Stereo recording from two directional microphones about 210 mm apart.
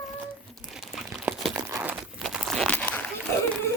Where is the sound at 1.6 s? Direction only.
15° right (ahead or behind); by 3.0 s 5° left (ahead or behind).